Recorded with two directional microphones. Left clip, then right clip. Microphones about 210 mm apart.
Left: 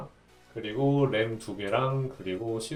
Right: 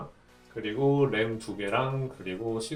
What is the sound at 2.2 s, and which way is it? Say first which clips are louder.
Speech: right 1 dB; 20° left (ahead or behind).